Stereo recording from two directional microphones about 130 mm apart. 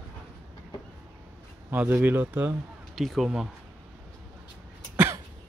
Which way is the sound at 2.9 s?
Centre (ahead or behind).